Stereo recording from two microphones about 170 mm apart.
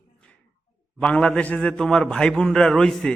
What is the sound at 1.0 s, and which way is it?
A man's voice, 5° left (ahead or behind).